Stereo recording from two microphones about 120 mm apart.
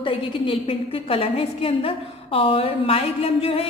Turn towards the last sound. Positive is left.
turn(degrees=55)  # may be behind; listen again after turning